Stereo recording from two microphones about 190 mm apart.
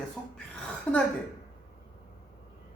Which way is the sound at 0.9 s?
5° left (ahead or behind).